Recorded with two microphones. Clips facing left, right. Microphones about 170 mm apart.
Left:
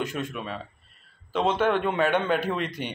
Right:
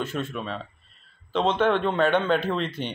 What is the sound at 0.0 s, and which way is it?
A man's voice, 15° left (ahead or behind).